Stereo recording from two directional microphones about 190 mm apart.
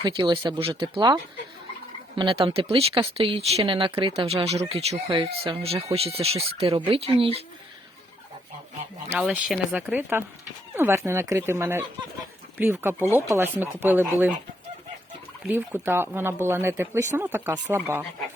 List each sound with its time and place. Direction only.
0.0 s speech: 25° right (ahead or behind)
4.9 s speech: 20° right (ahead or behind)
5.4 s speech: 30° right (ahead or behind)
9.1 s speech: 5° right (ahead or behind)
15.4 s speech: 10° right (ahead or behind)